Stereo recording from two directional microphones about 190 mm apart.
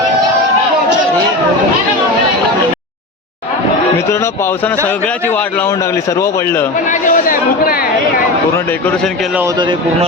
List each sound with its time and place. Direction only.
4.1 s speech: 15° left (ahead or behind)
6.9 s speech: 45° left (ahead or behind)